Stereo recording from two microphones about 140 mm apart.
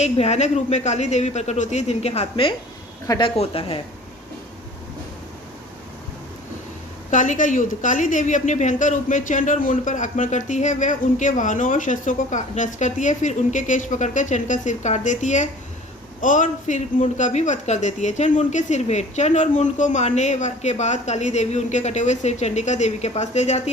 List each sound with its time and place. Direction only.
0.0 s speech: 50° left (ahead or behind)
7.1 s a woman's voice: 65° left (ahead or behind)